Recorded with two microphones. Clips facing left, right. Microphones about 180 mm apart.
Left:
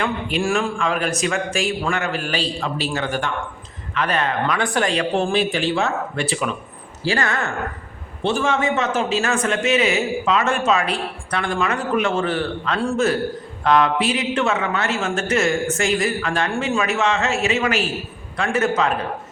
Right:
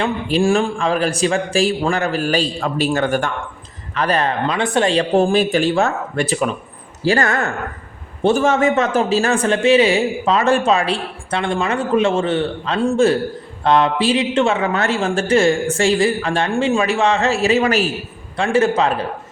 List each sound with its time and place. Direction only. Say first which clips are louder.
0.0 s a man's voice: right 5 dB; 30° right (ahead or behind); by 3.3 s 50° right (ahead or behind)
3.9 s a man's voice: right 3 dB; 35° right (ahead or behind)